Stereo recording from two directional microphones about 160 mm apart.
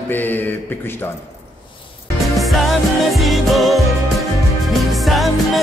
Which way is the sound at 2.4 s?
Centre (ahead or behind).